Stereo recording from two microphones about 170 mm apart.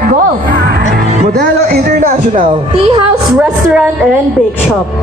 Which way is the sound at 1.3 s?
60° right (ahead or behind).